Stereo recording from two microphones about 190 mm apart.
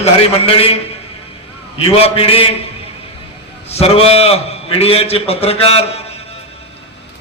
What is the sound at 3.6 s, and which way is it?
A man's voice, 30° left (ahead or behind).